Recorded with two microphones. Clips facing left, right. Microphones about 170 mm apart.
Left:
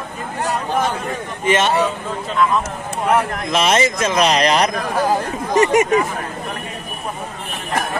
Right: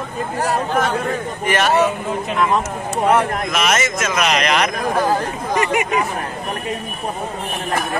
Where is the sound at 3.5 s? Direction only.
30° left (ahead or behind).